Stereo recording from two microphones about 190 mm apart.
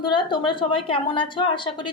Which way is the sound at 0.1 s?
25° left (ahead or behind).